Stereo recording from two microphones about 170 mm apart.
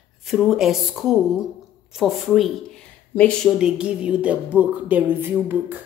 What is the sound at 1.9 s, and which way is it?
Speech, centre (ahead or behind).